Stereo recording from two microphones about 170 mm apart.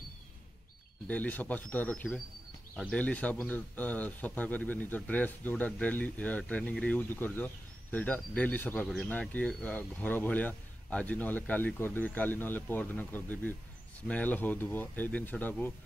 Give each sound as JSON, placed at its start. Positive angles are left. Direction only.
{"t": 1.0, "sound": "speech", "side_deg": 10}